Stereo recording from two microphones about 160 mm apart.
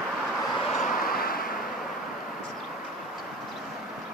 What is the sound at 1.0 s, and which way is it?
Vehicle, 65° left (ahead or behind).